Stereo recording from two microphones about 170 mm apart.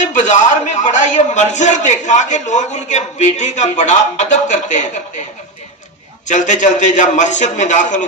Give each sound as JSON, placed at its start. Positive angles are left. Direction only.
{"t": 0.0, "sound": "a man's voice", "side_deg": 45}
{"t": 6.2, "sound": "a man's voice", "side_deg": 45}